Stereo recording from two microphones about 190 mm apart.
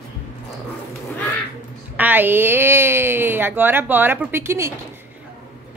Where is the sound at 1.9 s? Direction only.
10° right (ahead or behind).